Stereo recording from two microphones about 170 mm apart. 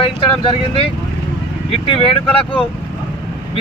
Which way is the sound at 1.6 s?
30° left (ahead or behind).